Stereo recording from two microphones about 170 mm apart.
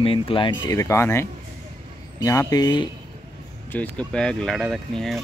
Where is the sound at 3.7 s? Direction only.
5° left (ahead or behind).